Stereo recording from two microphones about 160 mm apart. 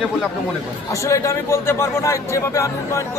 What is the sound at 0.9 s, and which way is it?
A man's voice, 20° left (ahead or behind).